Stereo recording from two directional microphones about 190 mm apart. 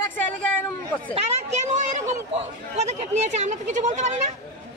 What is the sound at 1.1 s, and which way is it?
Chatter, 35° right (ahead or behind).